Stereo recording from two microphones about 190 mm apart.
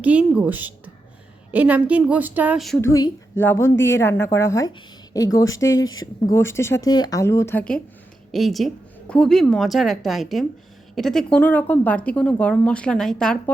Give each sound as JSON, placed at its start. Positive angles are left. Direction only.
{"t": 0.0, "sound": "a woman's voice", "side_deg": -5}
{"t": 2.8, "sound": "a woman's voice", "side_deg": 15}